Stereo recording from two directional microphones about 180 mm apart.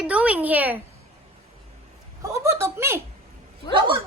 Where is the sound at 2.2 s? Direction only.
15° right (ahead or behind).